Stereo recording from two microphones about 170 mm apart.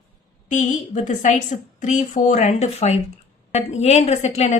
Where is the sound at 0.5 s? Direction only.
45° left (ahead or behind).